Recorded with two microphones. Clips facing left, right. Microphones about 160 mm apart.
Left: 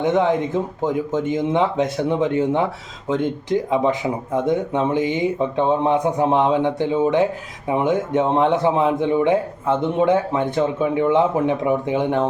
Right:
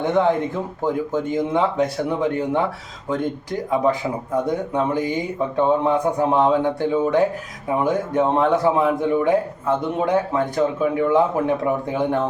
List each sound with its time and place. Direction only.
0.0 s a man's voice: 20° left (ahead or behind)